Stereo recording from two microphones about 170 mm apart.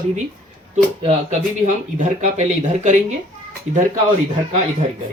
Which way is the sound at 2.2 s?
45° right (ahead or behind).